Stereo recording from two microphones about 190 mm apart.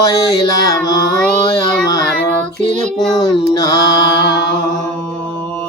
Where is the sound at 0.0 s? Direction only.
20° left (ahead or behind).